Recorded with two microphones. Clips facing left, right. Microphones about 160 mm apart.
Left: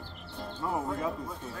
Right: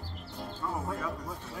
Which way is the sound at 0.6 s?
15° left (ahead or behind).